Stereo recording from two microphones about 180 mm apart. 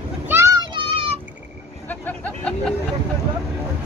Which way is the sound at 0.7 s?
30° right (ahead or behind).